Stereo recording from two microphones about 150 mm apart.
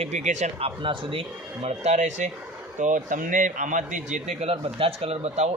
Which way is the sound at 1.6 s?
50° right (ahead or behind).